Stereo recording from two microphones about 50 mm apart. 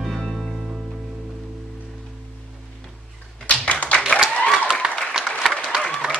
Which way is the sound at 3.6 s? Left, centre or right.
Left.